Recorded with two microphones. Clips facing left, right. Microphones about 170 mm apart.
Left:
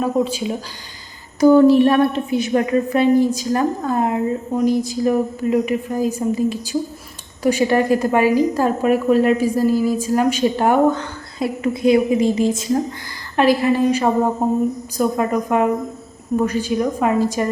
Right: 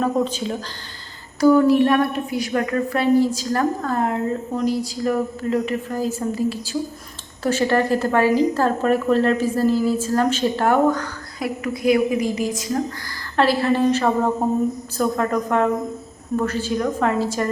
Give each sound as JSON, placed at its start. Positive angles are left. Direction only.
{"t": 0.0, "sound": "a woman's voice", "side_deg": 10}
{"t": 1.4, "sound": "a woman's voice", "side_deg": 25}
{"t": 13.3, "sound": "a woman's voice", "side_deg": 15}